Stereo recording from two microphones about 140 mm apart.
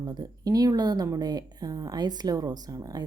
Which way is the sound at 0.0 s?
30° right (ahead or behind).